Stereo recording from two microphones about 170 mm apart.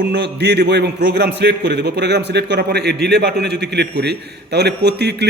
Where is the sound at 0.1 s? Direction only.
80° right.